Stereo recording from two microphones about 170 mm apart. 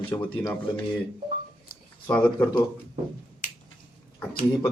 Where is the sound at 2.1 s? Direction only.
10° left (ahead or behind).